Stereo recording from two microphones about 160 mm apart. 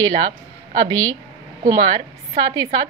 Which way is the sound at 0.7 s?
25° right (ahead or behind).